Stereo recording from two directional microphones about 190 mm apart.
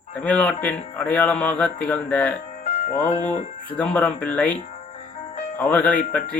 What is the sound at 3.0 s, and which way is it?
Speech, 35° left (ahead or behind).